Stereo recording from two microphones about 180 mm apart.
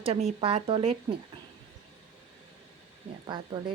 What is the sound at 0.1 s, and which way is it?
Speech, 35° right (ahead or behind).